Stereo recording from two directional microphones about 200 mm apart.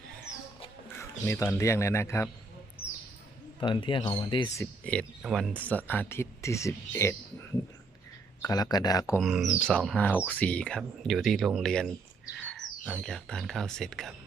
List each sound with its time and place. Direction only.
1.3 s speech: 15° left (ahead or behind)
3.6 s speech: 25° left (ahead or behind)
8.4 s speech: 20° left (ahead or behind)
9.2 s speech: centre (ahead or behind)